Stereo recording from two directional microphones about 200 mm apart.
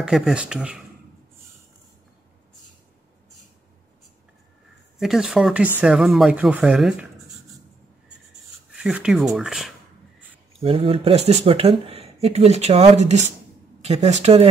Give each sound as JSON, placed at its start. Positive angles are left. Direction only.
{"t": 0.0, "sound": "speech", "side_deg": -5}
{"t": 4.9, "sound": "speech", "side_deg": 0}
{"t": 8.7, "sound": "speech", "side_deg": -5}
{"t": 10.6, "sound": "speech", "side_deg": -30}